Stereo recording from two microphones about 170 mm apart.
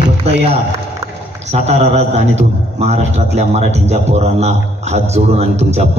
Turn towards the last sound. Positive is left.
turn(degrees=-40)  # may be behind; listen again after turning